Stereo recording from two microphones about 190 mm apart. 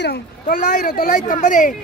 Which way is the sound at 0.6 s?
40° left (ahead or behind).